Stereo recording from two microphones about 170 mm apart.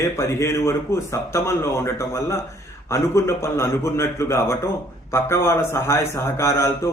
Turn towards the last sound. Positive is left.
turn(degrees=15)  # may be behind; listen again after turning